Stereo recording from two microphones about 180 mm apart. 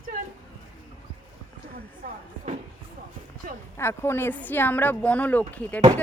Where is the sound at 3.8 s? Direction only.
15° left (ahead or behind).